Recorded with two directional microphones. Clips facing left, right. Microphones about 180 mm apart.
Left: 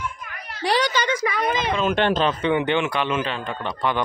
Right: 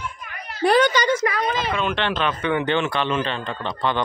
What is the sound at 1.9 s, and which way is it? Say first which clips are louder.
Speech: left 3 dB; 40° left (ahead or behind).